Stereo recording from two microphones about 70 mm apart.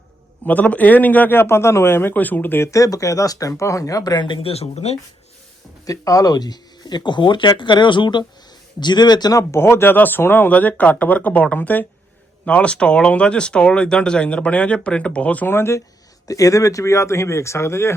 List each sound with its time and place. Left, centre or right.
0.4 s speech: left
2.6 s speech: left
5.8 s speech: left
9.4 s speech: left
15.5 s speech: left
16.2 s speech: left